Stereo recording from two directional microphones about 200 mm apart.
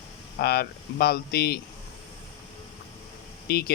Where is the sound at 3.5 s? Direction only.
50° left (ahead or behind).